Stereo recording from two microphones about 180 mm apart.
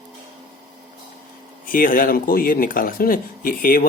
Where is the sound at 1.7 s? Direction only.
50° left (ahead or behind).